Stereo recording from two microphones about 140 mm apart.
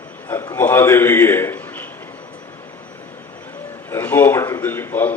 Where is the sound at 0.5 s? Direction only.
15° left (ahead or behind).